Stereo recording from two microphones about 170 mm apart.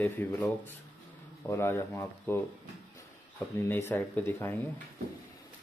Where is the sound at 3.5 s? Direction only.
10° left (ahead or behind).